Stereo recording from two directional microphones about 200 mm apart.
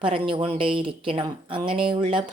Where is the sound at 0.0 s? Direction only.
25° right (ahead or behind).